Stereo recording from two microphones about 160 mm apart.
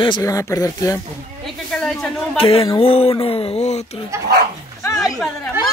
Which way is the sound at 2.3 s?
35° left (ahead or behind).